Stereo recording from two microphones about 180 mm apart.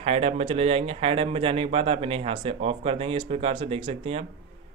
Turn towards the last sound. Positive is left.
turn(degrees=-30)  # may be behind; listen again after turning